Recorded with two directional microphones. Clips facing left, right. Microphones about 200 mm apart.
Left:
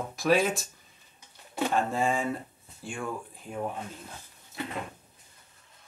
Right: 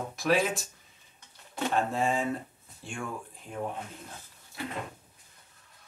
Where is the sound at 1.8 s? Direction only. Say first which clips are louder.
Right 1 dB; centre (ahead or behind).